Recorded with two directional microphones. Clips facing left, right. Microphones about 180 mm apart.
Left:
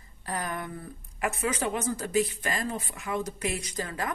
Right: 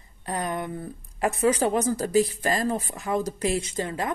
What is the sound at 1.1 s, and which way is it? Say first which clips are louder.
Speech: right 7 dB; 35° right (ahead or behind).